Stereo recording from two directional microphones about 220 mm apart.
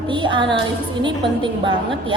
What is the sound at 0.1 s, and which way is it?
A woman's voice, 20° right (ahead or behind).